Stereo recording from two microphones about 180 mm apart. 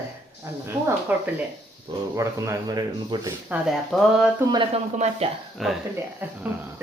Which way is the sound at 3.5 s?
Centre (ahead or behind).